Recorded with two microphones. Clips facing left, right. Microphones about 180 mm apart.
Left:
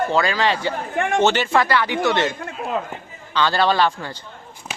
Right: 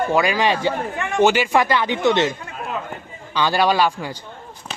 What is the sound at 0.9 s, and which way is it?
Speech, 50° left (ahead or behind).